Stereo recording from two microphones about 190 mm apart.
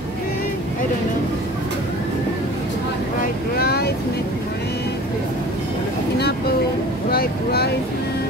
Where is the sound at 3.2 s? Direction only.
55° left (ahead or behind).